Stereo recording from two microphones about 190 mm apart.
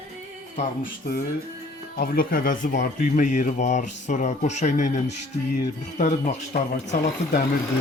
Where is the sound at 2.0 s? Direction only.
50° left (ahead or behind).